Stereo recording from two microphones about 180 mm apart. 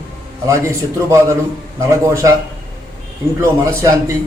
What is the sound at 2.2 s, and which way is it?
Speech, 15° right (ahead or behind).